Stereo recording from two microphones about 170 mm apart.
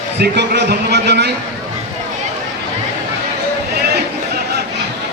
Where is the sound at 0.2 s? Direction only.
85° right.